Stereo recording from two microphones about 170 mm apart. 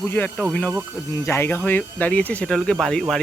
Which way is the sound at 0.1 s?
10° left (ahead or behind).